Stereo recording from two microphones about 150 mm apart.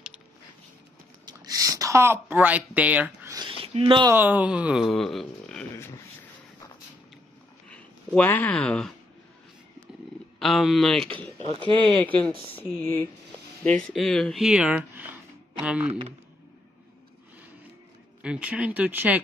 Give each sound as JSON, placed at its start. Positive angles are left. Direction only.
{"t": 1.2, "sound": "speech", "side_deg": -25}
{"t": 3.6, "sound": "speech", "side_deg": -40}
{"t": 4.1, "sound": "speech", "side_deg": -10}
{"t": 7.7, "sound": "speech", "side_deg": 10}
{"t": 10.4, "sound": "speech", "side_deg": 0}
{"t": 11.3, "sound": "speech", "side_deg": -35}
{"t": 12.8, "sound": "speech", "side_deg": 15}
{"t": 13.7, "sound": "speech", "side_deg": 5}
{"t": 18.2, "sound": "speech", "side_deg": -5}